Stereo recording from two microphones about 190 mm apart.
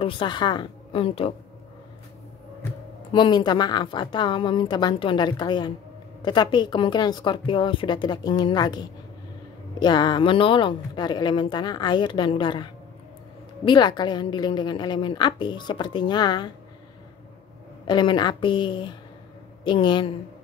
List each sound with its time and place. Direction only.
0.0 s speech: 25° left (ahead or behind)
3.1 s speech: 25° left (ahead or behind)
17.8 s speech: 25° left (ahead or behind)